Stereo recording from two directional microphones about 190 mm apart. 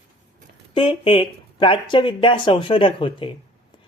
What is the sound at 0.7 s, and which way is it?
Speech, 25° left (ahead or behind).